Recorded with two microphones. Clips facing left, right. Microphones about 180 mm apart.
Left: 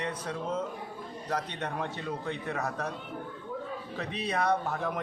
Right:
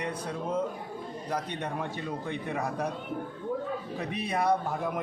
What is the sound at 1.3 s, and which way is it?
A man's voice, 10° right (ahead or behind).